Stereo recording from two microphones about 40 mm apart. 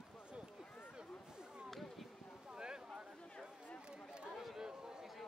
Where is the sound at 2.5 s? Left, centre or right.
Centre.